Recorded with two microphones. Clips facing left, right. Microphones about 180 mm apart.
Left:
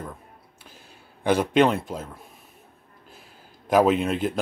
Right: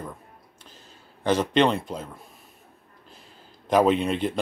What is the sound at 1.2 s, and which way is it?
Speech, 10° left (ahead or behind).